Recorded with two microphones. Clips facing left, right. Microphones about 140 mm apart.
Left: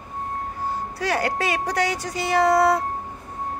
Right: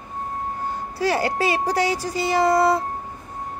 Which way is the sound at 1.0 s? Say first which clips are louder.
Right 3 dB; 5° right (ahead or behind).